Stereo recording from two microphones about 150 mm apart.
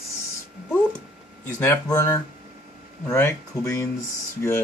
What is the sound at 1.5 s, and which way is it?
Speech, 15° left (ahead or behind).